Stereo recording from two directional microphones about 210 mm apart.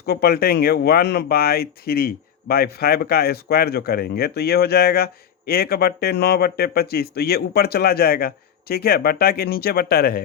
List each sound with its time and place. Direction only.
0.0 s speech: 50° left (ahead or behind)